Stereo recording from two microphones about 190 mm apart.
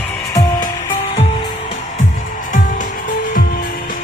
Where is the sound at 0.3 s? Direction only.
25° left (ahead or behind).